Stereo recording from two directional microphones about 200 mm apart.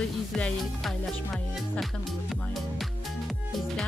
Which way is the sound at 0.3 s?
Centre (ahead or behind).